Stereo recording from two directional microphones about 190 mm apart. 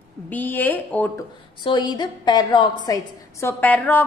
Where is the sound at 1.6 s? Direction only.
25° left (ahead or behind); by 4.0 s 10° left (ahead or behind).